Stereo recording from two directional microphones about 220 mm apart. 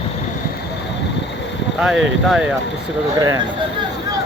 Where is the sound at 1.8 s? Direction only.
5° right (ahead or behind).